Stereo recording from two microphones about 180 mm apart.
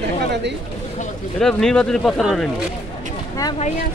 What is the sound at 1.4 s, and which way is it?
Speech, 5° left (ahead or behind).